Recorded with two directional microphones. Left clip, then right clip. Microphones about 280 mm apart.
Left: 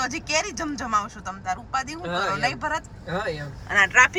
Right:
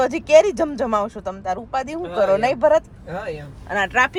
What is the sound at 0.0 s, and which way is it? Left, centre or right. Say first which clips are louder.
Speech: right 12 dB; centre.